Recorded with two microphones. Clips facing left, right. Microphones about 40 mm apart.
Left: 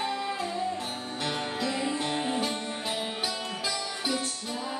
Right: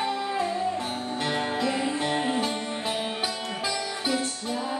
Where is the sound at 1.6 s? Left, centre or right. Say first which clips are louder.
Right 3 dB; centre.